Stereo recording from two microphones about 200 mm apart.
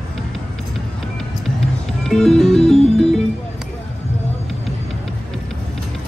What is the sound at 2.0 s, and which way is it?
Music, centre (ahead or behind).